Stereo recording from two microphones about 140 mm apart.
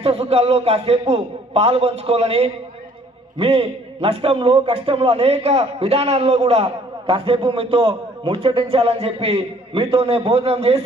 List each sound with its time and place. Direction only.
0.0 s a man's voice: 45° right (ahead or behind)